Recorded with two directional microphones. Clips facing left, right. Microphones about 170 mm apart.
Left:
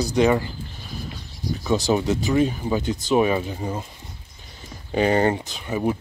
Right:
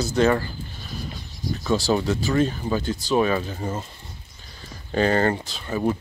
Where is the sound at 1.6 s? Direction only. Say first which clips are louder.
Left 1 dB; 15° left (ahead or behind).